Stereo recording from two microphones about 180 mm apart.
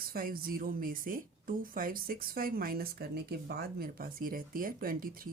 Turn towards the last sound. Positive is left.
turn(degrees=-50)  # may be behind; listen again after turning